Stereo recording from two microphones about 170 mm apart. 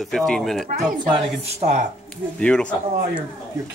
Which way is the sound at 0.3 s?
Centre (ahead or behind).